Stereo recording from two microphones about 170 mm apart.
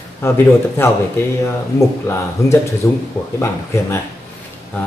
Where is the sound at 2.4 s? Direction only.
15° left (ahead or behind).